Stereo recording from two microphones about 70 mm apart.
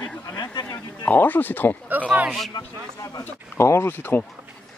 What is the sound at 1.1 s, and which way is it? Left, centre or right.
Speech, left.